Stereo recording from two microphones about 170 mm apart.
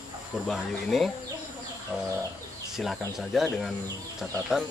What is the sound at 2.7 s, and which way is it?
Speech, centre (ahead or behind).